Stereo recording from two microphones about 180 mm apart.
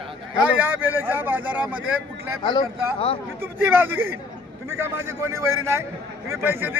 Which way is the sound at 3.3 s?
10° right (ahead or behind).